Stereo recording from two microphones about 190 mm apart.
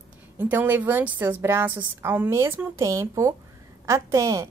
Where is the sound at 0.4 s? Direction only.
10° right (ahead or behind).